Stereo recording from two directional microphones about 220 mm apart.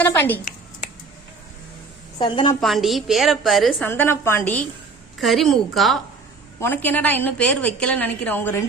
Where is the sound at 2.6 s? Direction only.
Centre (ahead or behind).